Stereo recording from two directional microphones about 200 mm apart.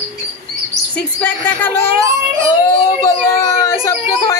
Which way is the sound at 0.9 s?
5° left (ahead or behind).